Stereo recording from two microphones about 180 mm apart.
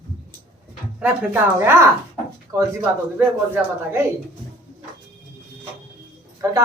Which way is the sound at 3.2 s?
10° right (ahead or behind).